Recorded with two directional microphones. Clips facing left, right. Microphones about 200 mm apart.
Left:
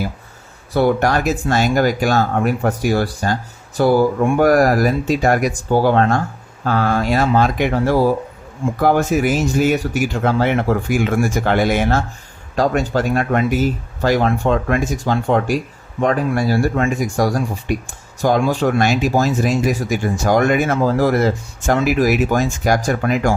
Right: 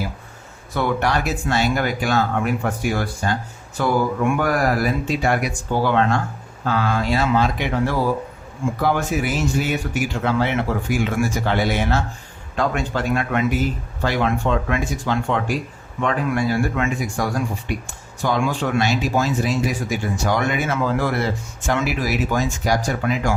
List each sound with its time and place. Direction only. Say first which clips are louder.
0.7 s speech: left 6 dB; 35° left (ahead or behind)